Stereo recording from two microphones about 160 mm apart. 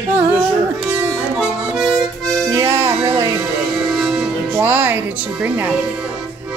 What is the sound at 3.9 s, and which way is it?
Music, 5° right (ahead or behind).